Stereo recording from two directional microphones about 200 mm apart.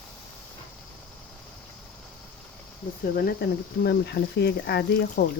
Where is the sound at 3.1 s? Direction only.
50° left (ahead or behind).